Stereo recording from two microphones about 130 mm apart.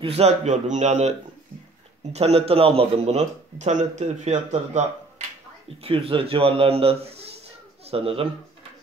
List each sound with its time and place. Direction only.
0.0 s speech: 55° right (ahead or behind)
2.1 s speech: 50° right (ahead or behind)
5.8 s a man's voice: 45° right (ahead or behind)